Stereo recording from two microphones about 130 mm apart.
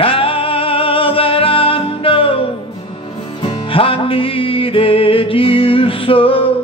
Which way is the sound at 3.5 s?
45° left (ahead or behind).